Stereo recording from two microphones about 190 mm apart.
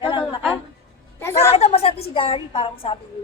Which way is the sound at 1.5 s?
35° left (ahead or behind).